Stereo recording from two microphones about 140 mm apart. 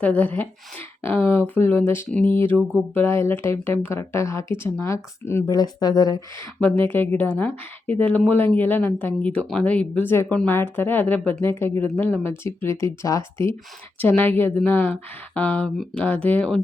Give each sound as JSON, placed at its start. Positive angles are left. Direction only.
{"t": 0.0, "sound": "speech", "side_deg": 10}
{"t": 5.5, "sound": "speech", "side_deg": 30}
{"t": 6.6, "sound": "speech", "side_deg": 15}